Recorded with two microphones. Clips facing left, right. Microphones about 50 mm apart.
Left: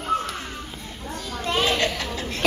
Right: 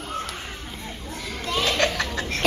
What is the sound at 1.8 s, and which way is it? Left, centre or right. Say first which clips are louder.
Laughter: right 2 dB; right.